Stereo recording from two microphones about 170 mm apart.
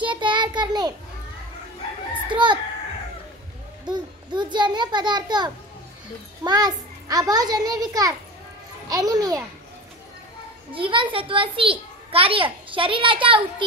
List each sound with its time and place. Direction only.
0.0 s child singing: 30° right (ahead or behind)
2.2 s speech: 30° right (ahead or behind)
3.8 s a child's voice: 25° right (ahead or behind)
10.7 s a child's voice: 30° right (ahead or behind)